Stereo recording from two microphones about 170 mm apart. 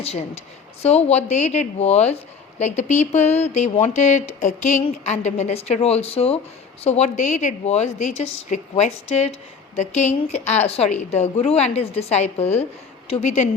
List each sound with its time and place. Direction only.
0.0 s a woman's voice: 35° left (ahead or behind)
10.2 s a woman's voice: 40° left (ahead or behind)